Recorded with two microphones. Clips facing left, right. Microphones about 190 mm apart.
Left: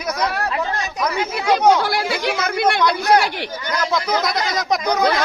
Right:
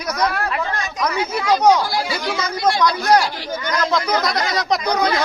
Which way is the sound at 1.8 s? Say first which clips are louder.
Left 1 dB; 65° left (ahead or behind).